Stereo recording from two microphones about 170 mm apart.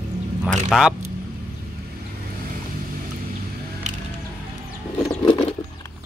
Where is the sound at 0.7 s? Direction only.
5° right (ahead or behind).